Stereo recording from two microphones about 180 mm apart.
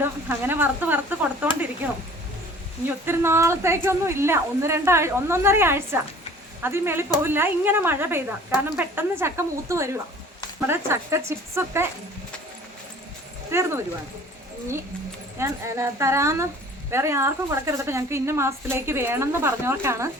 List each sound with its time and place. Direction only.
0.0 s a woman's voice: 10° right (ahead or behind)
3.1 s a woman's voice: 15° right (ahead or behind)
13.5 s a woman's voice: 15° right (ahead or behind)
15.4 s a woman's voice: 15° right (ahead or behind)